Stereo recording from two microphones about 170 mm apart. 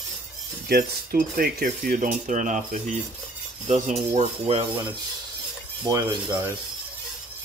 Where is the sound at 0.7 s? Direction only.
60° right (ahead or behind).